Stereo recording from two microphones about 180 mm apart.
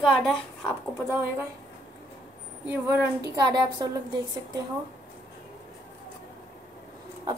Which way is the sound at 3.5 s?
20° right (ahead or behind).